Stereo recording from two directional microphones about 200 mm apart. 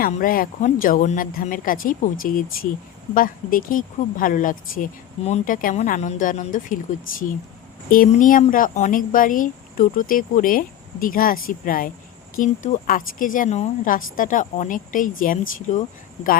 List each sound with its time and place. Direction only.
0.0 s a woman's voice: 45° left (ahead or behind)
7.9 s a woman's voice: 45° left (ahead or behind)